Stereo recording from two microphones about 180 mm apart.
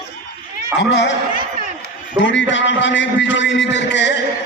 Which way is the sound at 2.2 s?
90° left.